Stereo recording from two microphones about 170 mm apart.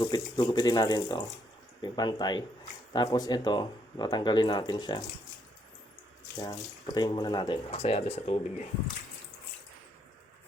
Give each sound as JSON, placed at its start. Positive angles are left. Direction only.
{"t": 0.0, "sound": "speech", "side_deg": 25}
{"t": 6.3, "sound": "speech", "side_deg": 20}